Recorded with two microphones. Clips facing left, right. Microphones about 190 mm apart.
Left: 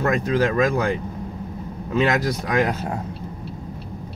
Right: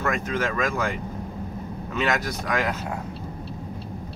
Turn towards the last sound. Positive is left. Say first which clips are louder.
# left 5 dB
turn(degrees=30)  # may be behind; listen again after turning